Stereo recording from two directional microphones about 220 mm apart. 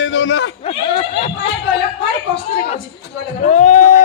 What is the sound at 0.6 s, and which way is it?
Speech, 25° left (ahead or behind).